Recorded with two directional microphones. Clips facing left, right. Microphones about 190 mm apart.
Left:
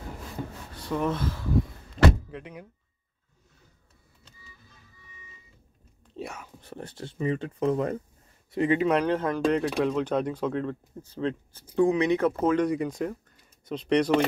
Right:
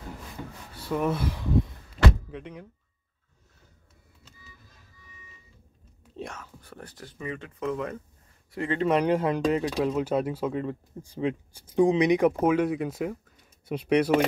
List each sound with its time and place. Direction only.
0.7 s speech: 5° right (ahead or behind)
2.3 s speech: 5° left (ahead or behind)
6.1 s whispering: 10° left (ahead or behind)
6.6 s speech: 25° left (ahead or behind)
8.5 s speech: 15° left (ahead or behind)
9.0 s speech: 15° right (ahead or behind)